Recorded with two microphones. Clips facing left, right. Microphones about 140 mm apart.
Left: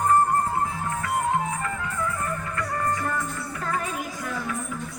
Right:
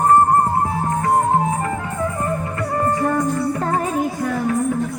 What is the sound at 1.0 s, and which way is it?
Music, 35° right (ahead or behind).